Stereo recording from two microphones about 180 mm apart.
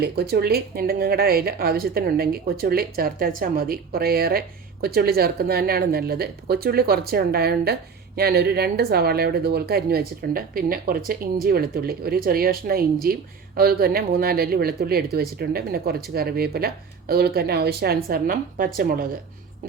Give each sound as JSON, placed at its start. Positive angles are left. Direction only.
{"t": 0.0, "sound": "speech", "side_deg": -60}